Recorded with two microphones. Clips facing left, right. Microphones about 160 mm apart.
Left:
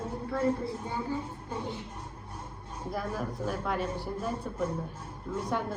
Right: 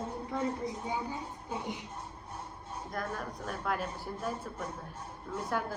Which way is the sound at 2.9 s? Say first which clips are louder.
Left 4 dB; 5° left (ahead or behind).